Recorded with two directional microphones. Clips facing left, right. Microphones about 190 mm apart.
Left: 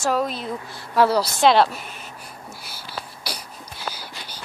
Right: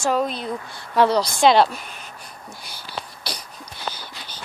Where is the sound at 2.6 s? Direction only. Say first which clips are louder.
Right 2 dB; 5° left (ahead or behind).